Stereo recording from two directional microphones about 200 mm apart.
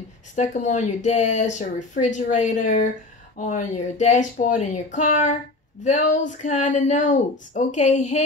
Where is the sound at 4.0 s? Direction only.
35° left (ahead or behind).